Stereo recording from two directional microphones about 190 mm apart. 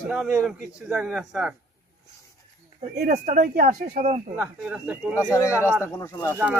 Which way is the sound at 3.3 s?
45° right (ahead or behind).